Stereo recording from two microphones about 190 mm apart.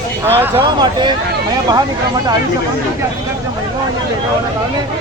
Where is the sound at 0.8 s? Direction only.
25° right (ahead or behind).